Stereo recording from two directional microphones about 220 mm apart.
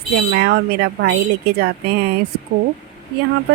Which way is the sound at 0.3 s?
50° right (ahead or behind).